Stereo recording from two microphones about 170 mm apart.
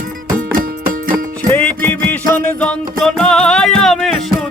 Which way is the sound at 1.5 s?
10° left (ahead or behind).